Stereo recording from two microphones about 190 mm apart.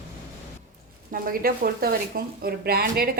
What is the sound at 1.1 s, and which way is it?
Speech, 50° right (ahead or behind).